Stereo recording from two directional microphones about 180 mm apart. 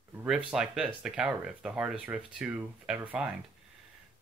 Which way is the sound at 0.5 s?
5° right (ahead or behind).